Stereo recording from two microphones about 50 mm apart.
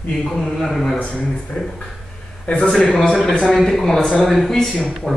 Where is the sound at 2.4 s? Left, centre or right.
Centre.